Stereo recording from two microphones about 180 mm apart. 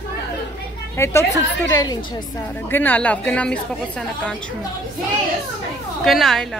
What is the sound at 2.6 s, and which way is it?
A woman's voice, 10° left (ahead or behind).